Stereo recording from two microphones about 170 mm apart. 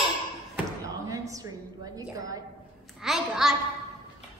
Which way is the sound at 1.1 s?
20° right (ahead or behind).